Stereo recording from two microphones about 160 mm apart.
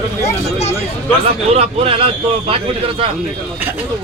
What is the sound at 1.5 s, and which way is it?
Speech, 40° right (ahead or behind).